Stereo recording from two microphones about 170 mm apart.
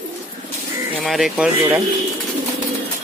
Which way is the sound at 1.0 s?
Centre (ahead or behind).